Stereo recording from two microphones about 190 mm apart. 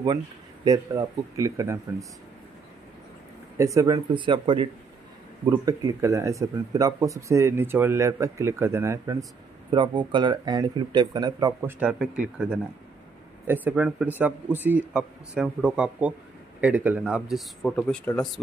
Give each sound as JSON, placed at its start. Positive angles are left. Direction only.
{"t": 0.7, "sound": "speech", "side_deg": -15}
{"t": 3.5, "sound": "speech", "side_deg": -15}
{"t": 13.5, "sound": "speech", "side_deg": -10}